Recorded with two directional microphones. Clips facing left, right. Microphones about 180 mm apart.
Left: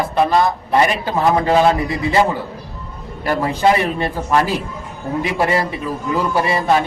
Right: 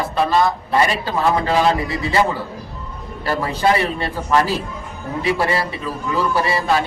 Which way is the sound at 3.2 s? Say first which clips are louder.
Left 3 dB; 20° left (ahead or behind).